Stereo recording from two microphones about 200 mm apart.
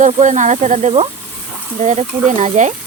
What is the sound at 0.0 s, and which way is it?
Speech, 40° right (ahead or behind).